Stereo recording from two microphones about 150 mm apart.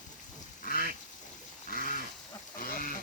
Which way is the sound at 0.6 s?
70° left (ahead or behind).